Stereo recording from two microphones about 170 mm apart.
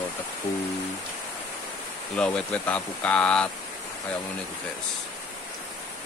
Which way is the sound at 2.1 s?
5° left (ahead or behind).